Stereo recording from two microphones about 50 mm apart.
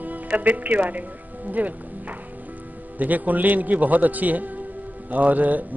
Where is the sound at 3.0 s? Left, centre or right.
Right.